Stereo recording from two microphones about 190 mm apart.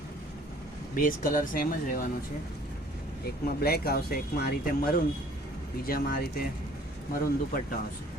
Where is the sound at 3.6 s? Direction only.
55° left (ahead or behind).